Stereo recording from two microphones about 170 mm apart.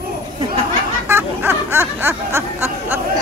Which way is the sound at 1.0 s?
15° right (ahead or behind).